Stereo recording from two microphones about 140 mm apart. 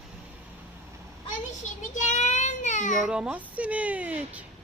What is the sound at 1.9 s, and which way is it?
Child singing, 60° left (ahead or behind).